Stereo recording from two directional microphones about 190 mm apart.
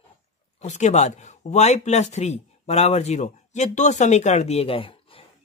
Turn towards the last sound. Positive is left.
turn(degrees=30)  # may be behind; listen again after turning